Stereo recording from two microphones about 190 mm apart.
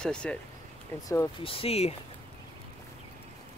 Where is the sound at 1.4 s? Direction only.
30° left (ahead or behind).